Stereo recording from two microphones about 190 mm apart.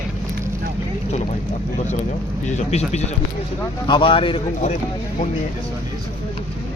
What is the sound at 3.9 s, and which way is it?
Speech, 25° left (ahead or behind).